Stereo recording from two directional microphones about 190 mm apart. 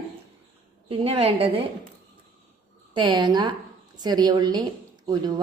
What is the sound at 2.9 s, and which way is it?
A woman's voice, 25° right (ahead or behind).